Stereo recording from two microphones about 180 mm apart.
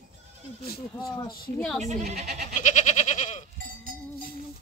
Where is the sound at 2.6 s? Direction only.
40° left (ahead or behind).